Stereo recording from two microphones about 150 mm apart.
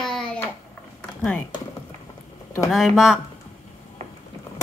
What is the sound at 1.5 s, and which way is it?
Speech, 30° left (ahead or behind).